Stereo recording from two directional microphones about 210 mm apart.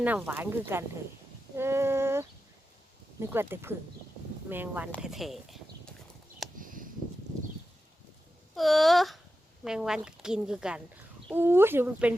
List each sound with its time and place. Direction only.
0.0 s speech: 10° right (ahead or behind)
1.5 s female singing: 10° right (ahead or behind)
3.2 s speech: 10° right (ahead or behind)
6.6 s a sound: 40° right (ahead or behind)
8.5 s speech: centre (ahead or behind)